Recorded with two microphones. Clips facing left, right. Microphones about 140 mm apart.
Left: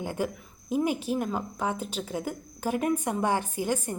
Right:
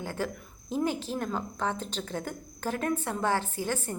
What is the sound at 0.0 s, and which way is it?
Speech, 15° left (ahead or behind).